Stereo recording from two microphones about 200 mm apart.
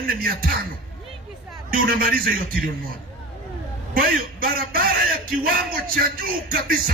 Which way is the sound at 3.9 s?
45° right (ahead or behind).